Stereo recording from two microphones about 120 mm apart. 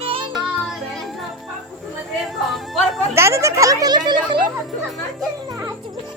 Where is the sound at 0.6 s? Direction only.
Centre (ahead or behind).